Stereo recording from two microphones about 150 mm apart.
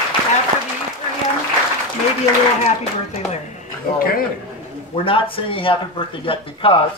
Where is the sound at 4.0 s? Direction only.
75° left (ahead or behind).